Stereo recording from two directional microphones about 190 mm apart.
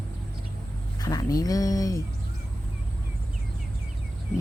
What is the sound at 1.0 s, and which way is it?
Speech, 20° left (ahead or behind).